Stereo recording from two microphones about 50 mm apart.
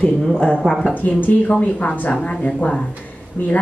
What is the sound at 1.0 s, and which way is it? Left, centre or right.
Speech, left.